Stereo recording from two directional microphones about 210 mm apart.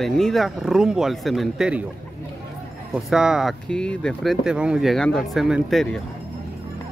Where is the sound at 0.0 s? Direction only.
Centre (ahead or behind).